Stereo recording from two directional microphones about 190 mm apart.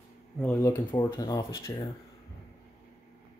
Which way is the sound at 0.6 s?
15° left (ahead or behind).